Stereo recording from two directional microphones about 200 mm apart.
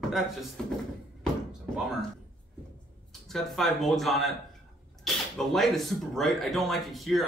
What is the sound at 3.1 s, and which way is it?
Speech, centre (ahead or behind).